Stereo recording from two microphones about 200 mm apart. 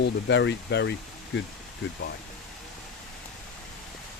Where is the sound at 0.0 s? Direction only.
60° left (ahead or behind).